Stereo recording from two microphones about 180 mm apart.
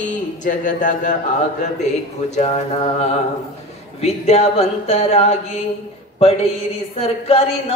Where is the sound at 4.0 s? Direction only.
35° left (ahead or behind).